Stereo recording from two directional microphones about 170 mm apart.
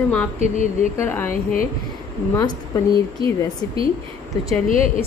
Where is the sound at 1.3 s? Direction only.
55° left (ahead or behind).